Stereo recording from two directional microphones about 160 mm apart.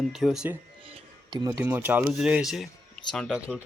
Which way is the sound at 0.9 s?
30° right (ahead or behind).